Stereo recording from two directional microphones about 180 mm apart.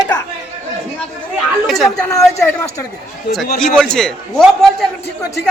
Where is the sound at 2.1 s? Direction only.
15° left (ahead or behind).